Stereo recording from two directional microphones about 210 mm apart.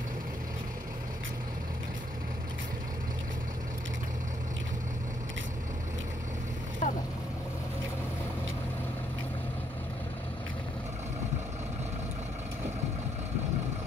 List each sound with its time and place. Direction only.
6.8 s boat: 35° left (ahead or behind)